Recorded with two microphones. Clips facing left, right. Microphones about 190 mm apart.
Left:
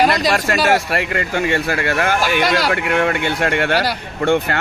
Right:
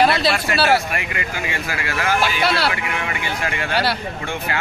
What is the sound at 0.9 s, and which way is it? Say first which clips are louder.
Speech: left 7 dB; 60° left (ahead or behind).